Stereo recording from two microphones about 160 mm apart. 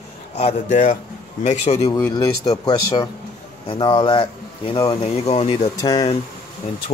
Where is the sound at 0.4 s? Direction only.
45° left (ahead or behind).